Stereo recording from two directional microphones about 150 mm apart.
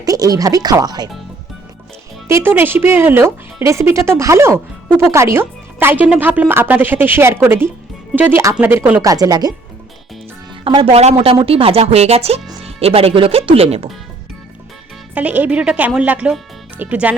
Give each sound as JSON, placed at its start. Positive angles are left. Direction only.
{"t": 0.0, "sound": "speech", "side_deg": -25}
{"t": 2.2, "sound": "speech", "side_deg": -15}
{"t": 9.0, "sound": "speech", "side_deg": -25}
{"t": 10.8, "sound": "speech", "side_deg": -40}
{"t": 15.1, "sound": "speech", "side_deg": -10}